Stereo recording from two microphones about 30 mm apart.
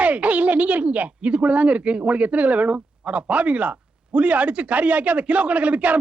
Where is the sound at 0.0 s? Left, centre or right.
Right.